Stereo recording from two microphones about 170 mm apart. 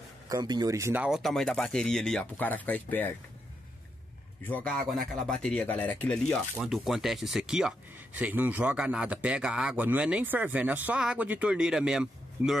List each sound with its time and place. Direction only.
0.3 s speech: 25° right (ahead or behind)
1.0 s speech: centre (ahead or behind)
4.5 s speech: 5° left (ahead or behind)